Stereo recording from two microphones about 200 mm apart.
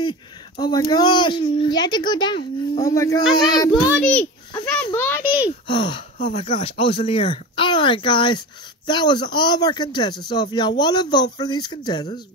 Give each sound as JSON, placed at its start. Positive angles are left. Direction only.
{"t": 0.6, "sound": "speech", "side_deg": 20}
{"t": 4.0, "sound": "a child's voice", "side_deg": 5}
{"t": 5.2, "sound": "a child's voice", "side_deg": -10}
{"t": 5.7, "sound": "speech", "side_deg": 25}